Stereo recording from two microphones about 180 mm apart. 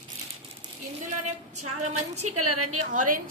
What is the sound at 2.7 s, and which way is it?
Speech, 45° right (ahead or behind).